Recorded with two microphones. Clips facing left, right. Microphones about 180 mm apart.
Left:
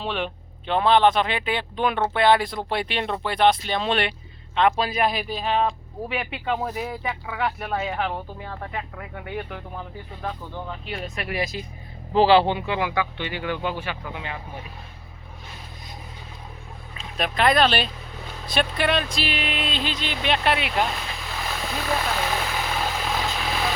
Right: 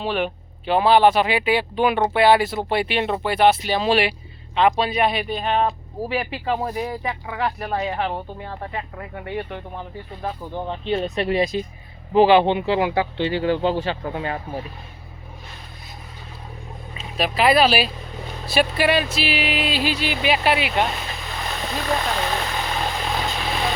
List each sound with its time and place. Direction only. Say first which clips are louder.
0.0 s speech: right 4 dB; 5° right (ahead or behind)
10.2 s speech: right 3 dB; 15° right (ahead or behind)
10.7 s speech: right 13 dB; 30° right (ahead or behind)
17.0 s speech: right 2 dB; 5° right (ahead or behind)
23.1 s vehicle: right 1 dB; centre (ahead or behind)